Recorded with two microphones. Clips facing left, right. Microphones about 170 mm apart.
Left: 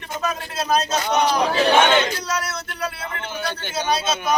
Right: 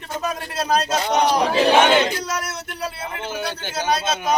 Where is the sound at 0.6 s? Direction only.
30° right (ahead or behind).